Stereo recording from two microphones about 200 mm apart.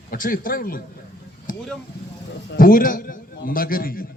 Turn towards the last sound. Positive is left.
turn(degrees=45)  # may be behind; listen again after turning